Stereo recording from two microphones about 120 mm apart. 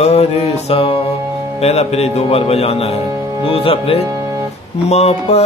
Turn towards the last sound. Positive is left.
turn(degrees=60)  # may be behind; listen again after turning